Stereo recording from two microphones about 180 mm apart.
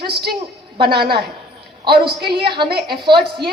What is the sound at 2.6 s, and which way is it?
Speech, 65° right (ahead or behind).